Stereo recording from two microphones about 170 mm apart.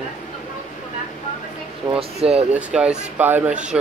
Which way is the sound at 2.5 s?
5° right (ahead or behind).